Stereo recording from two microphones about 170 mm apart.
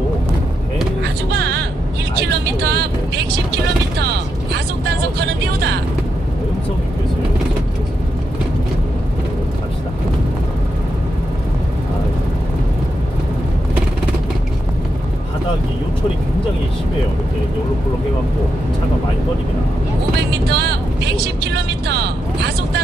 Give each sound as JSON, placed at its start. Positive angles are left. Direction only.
{"t": 1.0, "sound": "music", "side_deg": -80}
{"t": 2.6, "sound": "vehicle", "side_deg": -70}
{"t": 4.8, "sound": "vehicle", "side_deg": -75}
{"t": 20.4, "sound": "vehicle", "side_deg": -75}